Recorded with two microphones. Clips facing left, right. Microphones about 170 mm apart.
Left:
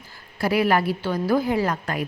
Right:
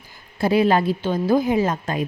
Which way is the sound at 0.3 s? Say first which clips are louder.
Right 3 dB; 25° right (ahead or behind).